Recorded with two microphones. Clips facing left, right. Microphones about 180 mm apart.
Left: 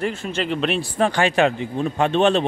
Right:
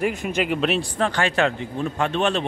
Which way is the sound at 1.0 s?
15° left (ahead or behind).